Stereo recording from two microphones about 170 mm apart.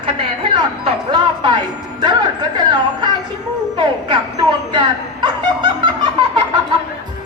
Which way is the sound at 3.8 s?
25° right (ahead or behind).